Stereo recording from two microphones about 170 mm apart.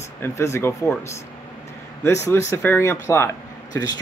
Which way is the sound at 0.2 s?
15° left (ahead or behind).